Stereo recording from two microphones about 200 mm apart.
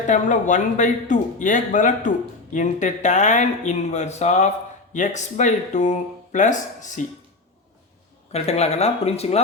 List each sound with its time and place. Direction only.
0.1 s a man's voice: 40° left (ahead or behind)
8.3 s a man's voice: 30° left (ahead or behind)